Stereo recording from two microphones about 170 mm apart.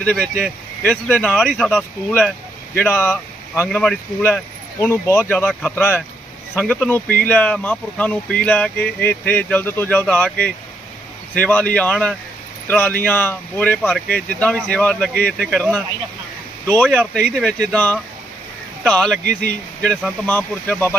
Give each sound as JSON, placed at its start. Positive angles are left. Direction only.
{"t": 0.0, "sound": "speech", "side_deg": 0}
{"t": 1.7, "sound": "speech", "side_deg": 5}
{"t": 16.6, "sound": "speech", "side_deg": 10}
{"t": 16.9, "sound": "speech", "side_deg": -5}
{"t": 17.7, "sound": "speech", "side_deg": 10}
{"t": 19.2, "sound": "speech", "side_deg": -75}
{"t": 19.8, "sound": "speech", "side_deg": 0}